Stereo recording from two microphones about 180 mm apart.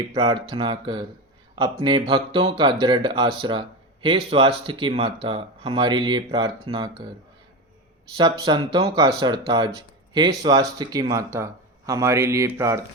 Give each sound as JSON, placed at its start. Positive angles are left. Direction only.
{"t": 0.2, "sound": "speech", "side_deg": -25}
{"t": 8.1, "sound": "speech", "side_deg": -25}